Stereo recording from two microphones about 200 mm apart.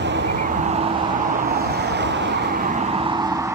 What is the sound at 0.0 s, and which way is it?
Vehicle, 60° right (ahead or behind).